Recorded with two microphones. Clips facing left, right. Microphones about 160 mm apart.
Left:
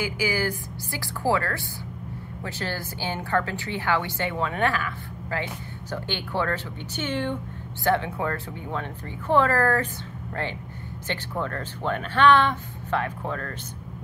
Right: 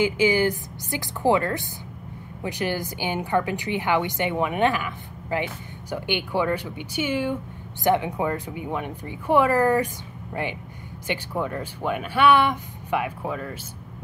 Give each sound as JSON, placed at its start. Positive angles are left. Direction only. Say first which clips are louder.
{"t": 0.0, "sound": "a woman's voice", "louder": "right 6 dB", "side_deg": -20}
{"t": 11.1, "sound": "a woman's voice", "louder": "right 3 dB", "side_deg": -10}